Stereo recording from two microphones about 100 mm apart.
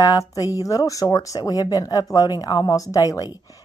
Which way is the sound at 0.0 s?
35° left (ahead or behind).